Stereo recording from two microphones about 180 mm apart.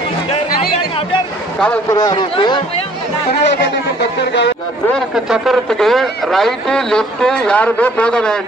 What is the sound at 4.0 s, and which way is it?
Speech, 70° left (ahead or behind).